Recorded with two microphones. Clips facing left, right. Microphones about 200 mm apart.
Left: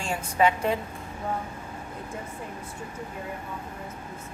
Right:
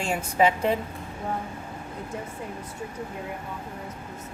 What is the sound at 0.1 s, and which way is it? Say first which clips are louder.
Speech: right 1 dB; 25° right (ahead or behind).